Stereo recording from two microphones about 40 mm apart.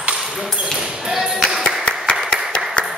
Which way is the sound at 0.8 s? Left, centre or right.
Centre.